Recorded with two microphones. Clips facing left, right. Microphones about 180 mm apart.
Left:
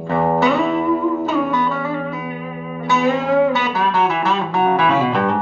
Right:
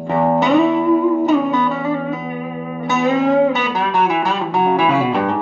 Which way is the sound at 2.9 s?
20° right (ahead or behind).